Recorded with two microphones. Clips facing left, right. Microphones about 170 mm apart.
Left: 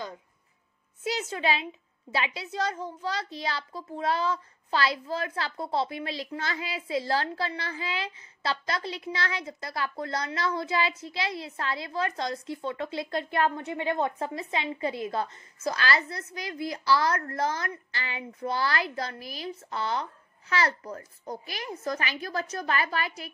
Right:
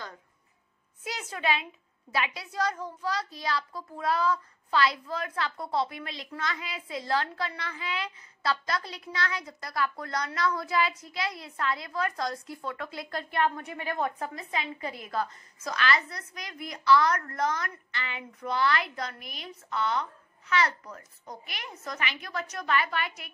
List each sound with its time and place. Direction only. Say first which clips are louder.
1.0 s a child's voice: left 3 dB; 25° left (ahead or behind)